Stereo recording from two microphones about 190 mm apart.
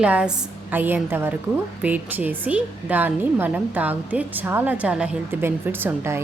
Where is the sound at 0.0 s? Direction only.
5° right (ahead or behind).